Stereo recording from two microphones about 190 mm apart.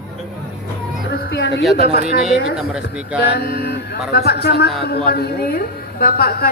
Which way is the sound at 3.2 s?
55° left (ahead or behind).